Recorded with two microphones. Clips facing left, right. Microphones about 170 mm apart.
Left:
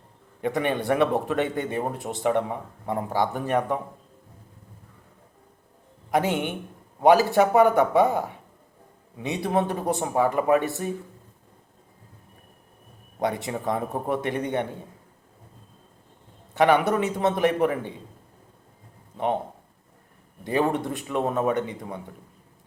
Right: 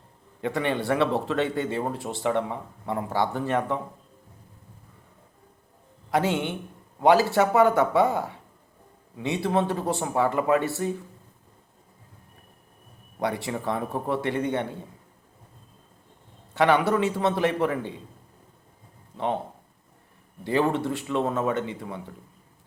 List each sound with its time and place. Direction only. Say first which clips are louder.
0.4 s speech: left 1 dB; 15° left (ahead or behind)
6.1 s speech: left 1 dB; 20° left (ahead or behind)
13.1 s a man's voice: left 1 dB; 20° left (ahead or behind)
16.6 s a man's voice: left 1 dB; 20° left (ahead or behind)
19.1 s speech: left 2 dB; 15° left (ahead or behind)
20.4 s speech: even; 15° left (ahead or behind)